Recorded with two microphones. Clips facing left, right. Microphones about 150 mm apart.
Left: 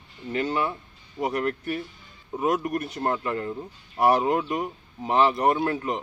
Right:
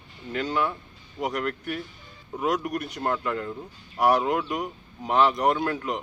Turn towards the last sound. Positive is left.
turn(degrees=25)  # may be behind; listen again after turning